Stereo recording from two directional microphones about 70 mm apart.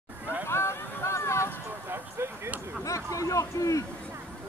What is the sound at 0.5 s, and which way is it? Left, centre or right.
Vehicle, left.